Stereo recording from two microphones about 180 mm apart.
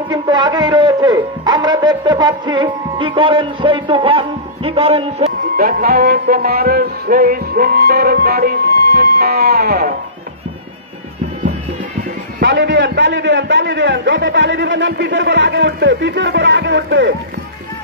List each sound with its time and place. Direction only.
0.1 s a man's voice: 25° right (ahead or behind)
5.4 s music: 55° right (ahead or behind)
12.4 s a man's voice: 75° right (ahead or behind)